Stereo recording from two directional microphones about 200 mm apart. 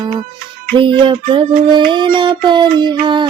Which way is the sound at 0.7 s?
25° right (ahead or behind).